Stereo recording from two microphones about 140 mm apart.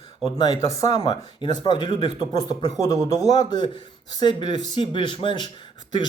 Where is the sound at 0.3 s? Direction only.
25° left (ahead or behind).